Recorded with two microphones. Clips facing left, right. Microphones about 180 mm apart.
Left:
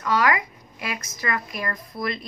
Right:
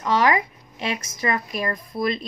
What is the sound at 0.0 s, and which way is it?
A woman's voice, 25° right (ahead or behind).